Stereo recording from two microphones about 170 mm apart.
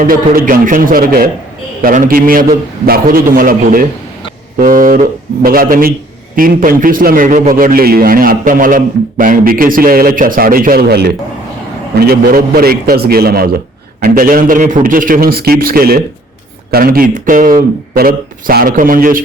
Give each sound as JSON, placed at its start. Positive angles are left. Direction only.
{"t": 0.0, "sound": "a man's voice", "side_deg": -55}